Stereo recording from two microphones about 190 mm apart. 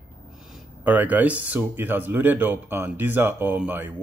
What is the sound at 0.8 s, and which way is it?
Speech, 10° right (ahead or behind).